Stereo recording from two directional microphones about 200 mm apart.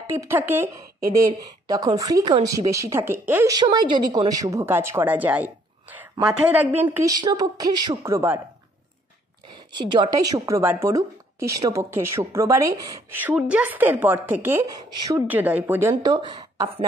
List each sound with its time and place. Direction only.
0.0 s a woman's voice: 10° right (ahead or behind)
9.8 s a woman's voice: 20° right (ahead or behind)
15.9 s speech: 20° right (ahead or behind)